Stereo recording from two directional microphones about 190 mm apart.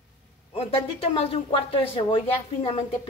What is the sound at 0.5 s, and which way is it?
A woman's voice, 30° left (ahead or behind).